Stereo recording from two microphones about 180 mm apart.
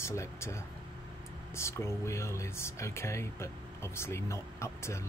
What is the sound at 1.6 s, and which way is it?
Speech, 15° left (ahead or behind).